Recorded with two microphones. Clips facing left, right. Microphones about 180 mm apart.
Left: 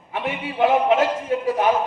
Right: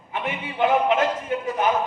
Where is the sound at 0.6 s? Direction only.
25° left (ahead or behind).